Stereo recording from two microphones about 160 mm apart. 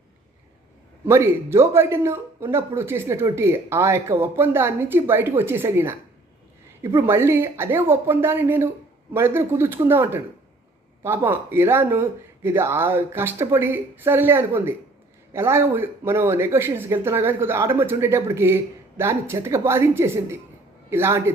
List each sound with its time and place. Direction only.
1.0 s speech: 15° right (ahead or behind)